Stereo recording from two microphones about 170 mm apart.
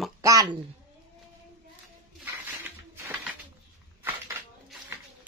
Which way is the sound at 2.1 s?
10° right (ahead or behind).